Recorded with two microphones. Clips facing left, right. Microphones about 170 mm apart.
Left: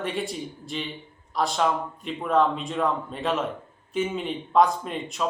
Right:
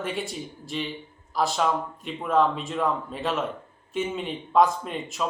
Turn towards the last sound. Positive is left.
turn(degrees=0)  # may be behind; listen again after turning